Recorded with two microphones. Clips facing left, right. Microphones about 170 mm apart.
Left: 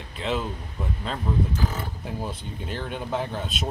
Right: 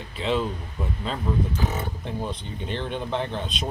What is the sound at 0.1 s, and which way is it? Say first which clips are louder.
Speech: right 3 dB; centre (ahead or behind).